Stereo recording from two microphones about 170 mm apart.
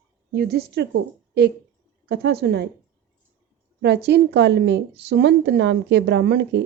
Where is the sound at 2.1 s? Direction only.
70° right (ahead or behind).